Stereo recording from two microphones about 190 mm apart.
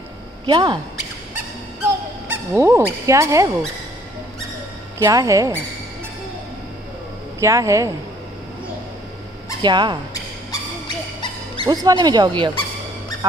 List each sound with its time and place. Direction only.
0.5 s speech: 25° right (ahead or behind)
1.8 s speech: 10° right (ahead or behind)
4.9 s a woman's voice: 15° right (ahead or behind)
7.3 s a woman's voice: 15° right (ahead or behind)
9.6 s speech: 25° right (ahead or behind)
11.5 s speech: 25° right (ahead or behind)